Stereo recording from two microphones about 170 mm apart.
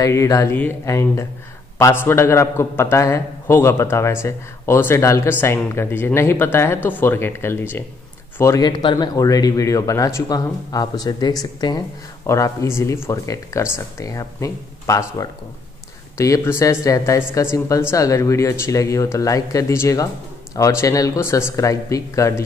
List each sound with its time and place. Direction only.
0.0 s a man's voice: 20° left (ahead or behind)